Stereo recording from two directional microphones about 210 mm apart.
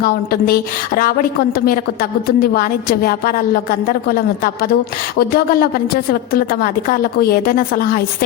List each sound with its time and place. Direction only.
0.0 s a woman's voice: 45° left (ahead or behind)